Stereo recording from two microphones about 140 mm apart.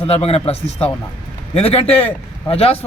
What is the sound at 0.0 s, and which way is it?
A man's voice, 45° left (ahead or behind).